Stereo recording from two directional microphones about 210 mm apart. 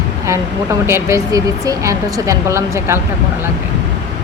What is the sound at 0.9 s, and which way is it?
Speech, 10° right (ahead or behind).